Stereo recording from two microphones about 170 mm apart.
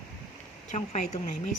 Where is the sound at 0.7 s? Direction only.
40° left (ahead or behind).